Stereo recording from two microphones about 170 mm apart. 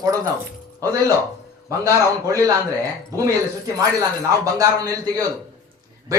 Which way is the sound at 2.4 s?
20° right (ahead or behind).